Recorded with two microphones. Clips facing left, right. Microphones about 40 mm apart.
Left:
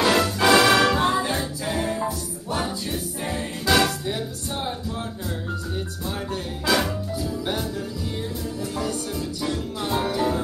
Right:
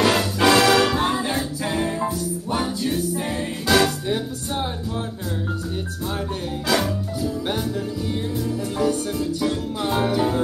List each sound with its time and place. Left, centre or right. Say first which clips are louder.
0.0 s music: right 1 dB; centre
6.7 s music: even; centre
9.5 s music: right 2 dB; centre